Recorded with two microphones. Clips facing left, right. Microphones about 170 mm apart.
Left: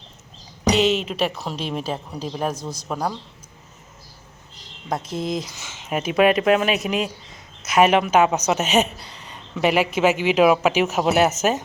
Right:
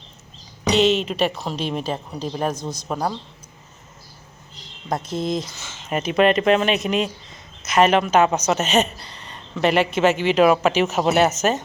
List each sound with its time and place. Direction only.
0.7 s speech: 5° left (ahead or behind)
5.1 s a woman's voice: 5° left (ahead or behind)